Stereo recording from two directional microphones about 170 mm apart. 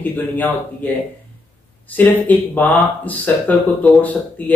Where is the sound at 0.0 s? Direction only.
10° left (ahead or behind).